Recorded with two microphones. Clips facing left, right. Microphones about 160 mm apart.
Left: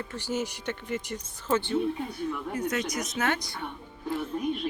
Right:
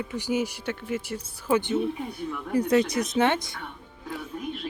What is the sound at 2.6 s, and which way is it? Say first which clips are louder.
Speech: right 11 dB; 30° right (ahead or behind).